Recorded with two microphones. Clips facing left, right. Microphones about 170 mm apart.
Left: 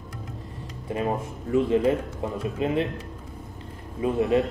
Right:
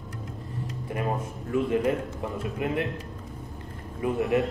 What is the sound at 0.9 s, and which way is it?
A man's voice, 25° left (ahead or behind).